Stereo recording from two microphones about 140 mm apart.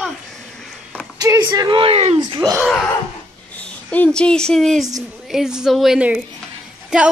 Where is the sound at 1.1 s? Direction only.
25° right (ahead or behind).